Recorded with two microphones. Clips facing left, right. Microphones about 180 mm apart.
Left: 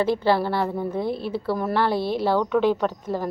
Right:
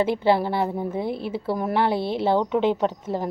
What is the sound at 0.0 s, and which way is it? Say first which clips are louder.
A woman's voice: even; 20° right (ahead or behind).